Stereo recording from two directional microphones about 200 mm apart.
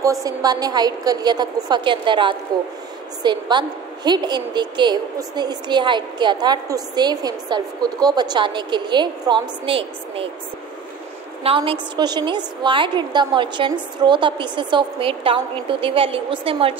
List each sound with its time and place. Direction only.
0.0 s a woman's voice: 15° right (ahead or behind)
11.4 s a woman's voice: 25° right (ahead or behind)